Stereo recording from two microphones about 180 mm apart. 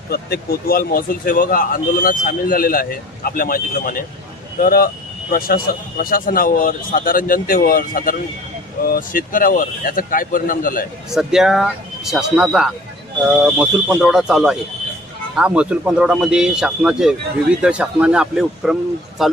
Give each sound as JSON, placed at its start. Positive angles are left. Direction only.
{"t": 0.1, "sound": "speech", "side_deg": 60}
{"t": 11.1, "sound": "speech", "side_deg": -5}